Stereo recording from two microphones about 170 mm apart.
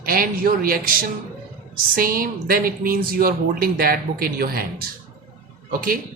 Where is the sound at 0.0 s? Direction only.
60° right (ahead or behind).